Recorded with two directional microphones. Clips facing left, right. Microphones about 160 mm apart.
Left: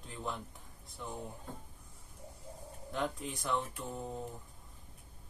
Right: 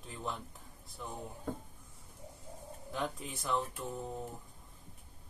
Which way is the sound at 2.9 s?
Centre (ahead or behind).